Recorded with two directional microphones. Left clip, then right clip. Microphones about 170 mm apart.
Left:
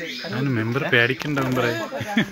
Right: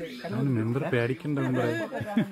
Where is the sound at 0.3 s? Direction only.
15° left (ahead or behind).